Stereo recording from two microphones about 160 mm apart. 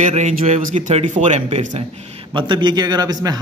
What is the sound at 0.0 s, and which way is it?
Speech, 45° right (ahead or behind).